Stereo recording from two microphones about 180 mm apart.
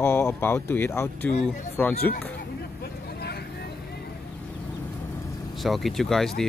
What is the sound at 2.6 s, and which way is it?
Vehicle, 60° left (ahead or behind).